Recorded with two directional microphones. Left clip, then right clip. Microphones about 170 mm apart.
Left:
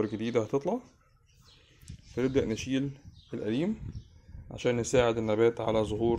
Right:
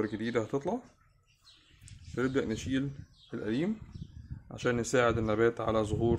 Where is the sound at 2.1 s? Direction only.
20° left (ahead or behind).